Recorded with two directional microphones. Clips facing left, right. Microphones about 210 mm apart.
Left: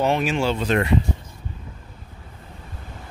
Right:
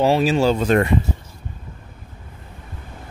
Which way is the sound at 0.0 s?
35° right (ahead or behind).